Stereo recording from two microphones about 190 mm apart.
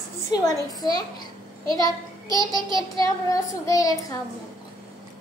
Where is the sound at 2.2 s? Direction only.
20° right (ahead or behind).